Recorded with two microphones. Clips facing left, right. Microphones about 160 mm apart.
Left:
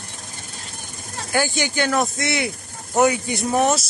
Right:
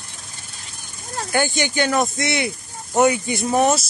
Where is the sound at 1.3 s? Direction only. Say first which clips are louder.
Right 1 dB; 5° left (ahead or behind).